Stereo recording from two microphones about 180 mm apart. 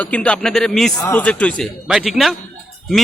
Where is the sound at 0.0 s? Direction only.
5° left (ahead or behind).